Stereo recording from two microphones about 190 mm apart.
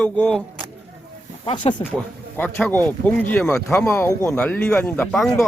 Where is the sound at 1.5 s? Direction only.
30° left (ahead or behind).